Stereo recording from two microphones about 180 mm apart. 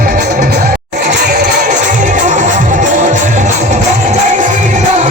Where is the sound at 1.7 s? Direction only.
45° right (ahead or behind).